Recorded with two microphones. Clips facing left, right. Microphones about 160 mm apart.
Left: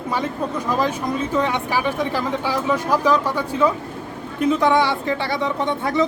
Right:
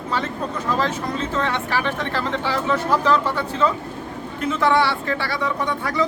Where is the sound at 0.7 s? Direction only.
15° left (ahead or behind).